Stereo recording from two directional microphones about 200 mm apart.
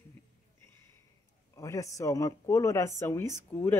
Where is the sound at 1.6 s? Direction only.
15° left (ahead or behind).